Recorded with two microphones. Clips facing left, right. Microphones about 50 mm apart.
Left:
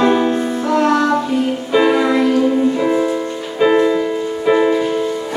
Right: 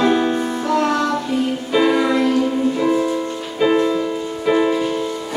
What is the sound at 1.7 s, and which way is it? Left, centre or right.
Music, centre.